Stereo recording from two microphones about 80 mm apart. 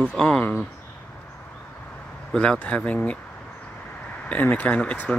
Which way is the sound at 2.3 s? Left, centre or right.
Centre.